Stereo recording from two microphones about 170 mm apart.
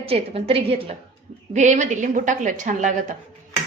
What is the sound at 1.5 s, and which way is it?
A woman's voice, 45° right (ahead or behind).